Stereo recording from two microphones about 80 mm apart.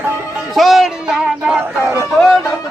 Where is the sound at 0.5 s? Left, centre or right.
Centre.